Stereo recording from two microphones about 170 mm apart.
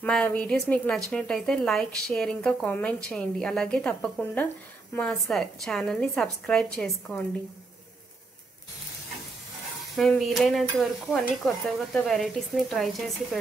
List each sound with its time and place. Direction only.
0.0 s a woman's voice: 5° left (ahead or behind)
9.9 s a woman's voice: centre (ahead or behind)